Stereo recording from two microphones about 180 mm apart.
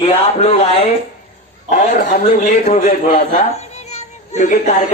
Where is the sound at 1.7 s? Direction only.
45° left (ahead or behind).